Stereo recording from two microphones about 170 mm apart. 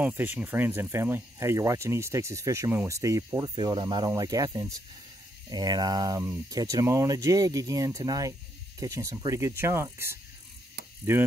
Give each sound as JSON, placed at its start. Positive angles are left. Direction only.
{"t": 0.0, "sound": "speech", "side_deg": -10}